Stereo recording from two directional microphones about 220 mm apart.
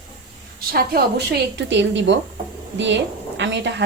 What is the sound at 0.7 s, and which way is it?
A woman's voice, 45° right (ahead or behind).